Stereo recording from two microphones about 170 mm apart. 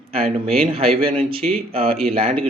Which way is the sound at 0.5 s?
35° right (ahead or behind).